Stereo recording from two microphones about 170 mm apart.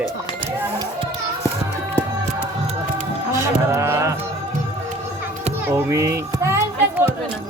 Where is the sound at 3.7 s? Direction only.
15° right (ahead or behind).